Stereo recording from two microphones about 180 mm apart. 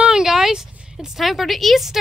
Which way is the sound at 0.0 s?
5° right (ahead or behind).